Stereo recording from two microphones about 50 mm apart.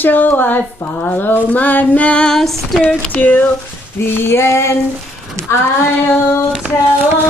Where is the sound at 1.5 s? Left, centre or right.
Left.